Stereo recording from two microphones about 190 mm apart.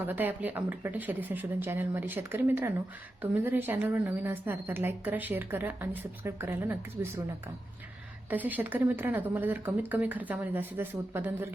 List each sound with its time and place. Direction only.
0.0 s a woman's voice: 10° right (ahead or behind)